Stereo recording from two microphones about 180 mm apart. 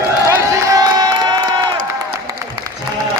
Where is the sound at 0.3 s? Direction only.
15° right (ahead or behind).